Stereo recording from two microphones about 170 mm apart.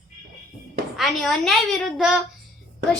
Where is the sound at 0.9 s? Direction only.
5° left (ahead or behind).